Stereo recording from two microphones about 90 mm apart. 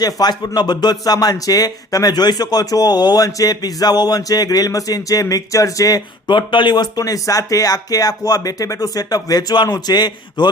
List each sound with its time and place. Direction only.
0.0 s speech: 50° left (ahead or behind)
6.2 s speech: 60° left (ahead or behind)